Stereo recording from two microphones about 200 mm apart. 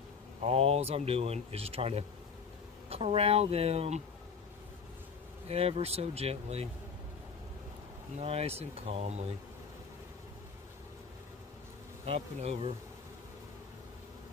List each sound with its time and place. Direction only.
0.4 s speech: 30° right (ahead or behind)
5.5 s speech: 30° right (ahead or behind)
8.2 s speech: 30° right (ahead or behind)
12.1 s bee: 30° right (ahead or behind)